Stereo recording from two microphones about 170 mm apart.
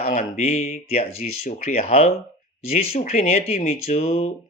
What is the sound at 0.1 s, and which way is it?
Speech, 35° left (ahead or behind).